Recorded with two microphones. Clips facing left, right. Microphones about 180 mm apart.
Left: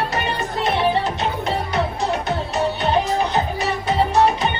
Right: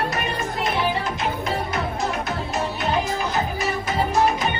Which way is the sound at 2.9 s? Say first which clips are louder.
Left 3 dB; 35° left (ahead or behind).